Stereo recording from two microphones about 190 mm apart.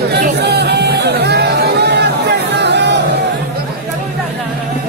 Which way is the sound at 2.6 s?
65° right (ahead or behind).